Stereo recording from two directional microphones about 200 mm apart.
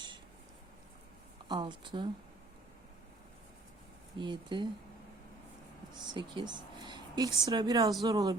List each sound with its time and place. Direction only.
1.5 s speech: 25° right (ahead or behind)
4.2 s speech: 25° right (ahead or behind)
6.1 s speech: 20° right (ahead or behind)